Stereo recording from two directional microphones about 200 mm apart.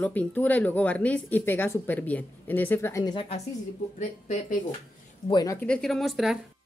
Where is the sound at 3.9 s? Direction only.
40° left (ahead or behind).